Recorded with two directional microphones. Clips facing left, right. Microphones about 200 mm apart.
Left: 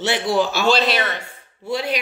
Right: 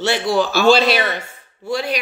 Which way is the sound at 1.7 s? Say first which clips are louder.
Right 1 dB; 20° left (ahead or behind).